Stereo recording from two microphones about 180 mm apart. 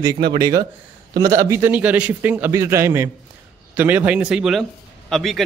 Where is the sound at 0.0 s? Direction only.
25° right (ahead or behind).